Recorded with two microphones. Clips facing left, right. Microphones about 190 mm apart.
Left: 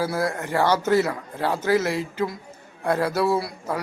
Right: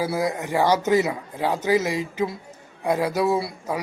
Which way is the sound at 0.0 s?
15° right (ahead or behind).